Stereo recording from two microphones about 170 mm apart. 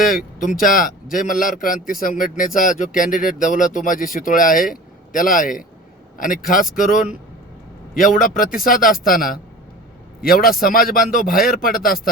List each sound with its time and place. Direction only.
0.3 s a man's voice: 55° left (ahead or behind)